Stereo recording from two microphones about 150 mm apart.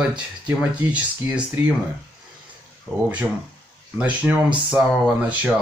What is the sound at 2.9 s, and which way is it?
Speech, 15° left (ahead or behind).